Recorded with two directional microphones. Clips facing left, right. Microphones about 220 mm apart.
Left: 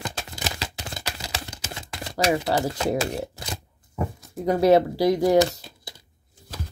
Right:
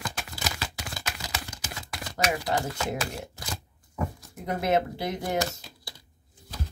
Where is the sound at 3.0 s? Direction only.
25° left (ahead or behind).